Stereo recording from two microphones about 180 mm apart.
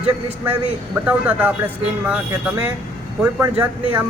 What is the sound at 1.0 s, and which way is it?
Speech, 10° right (ahead or behind).